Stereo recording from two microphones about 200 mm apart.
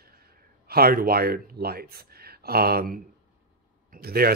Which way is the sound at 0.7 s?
50° right (ahead or behind).